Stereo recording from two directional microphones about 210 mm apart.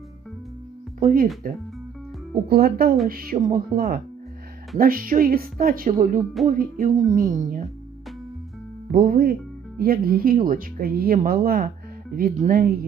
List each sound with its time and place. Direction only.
0.9 s speech: 40° right (ahead or behind)
2.5 s speech: 50° right (ahead or behind)
6.5 s music: 40° right (ahead or behind)
8.9 s speech: 40° right (ahead or behind)